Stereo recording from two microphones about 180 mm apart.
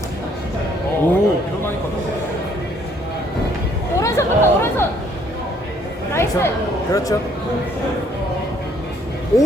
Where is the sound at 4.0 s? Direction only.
15° left (ahead or behind).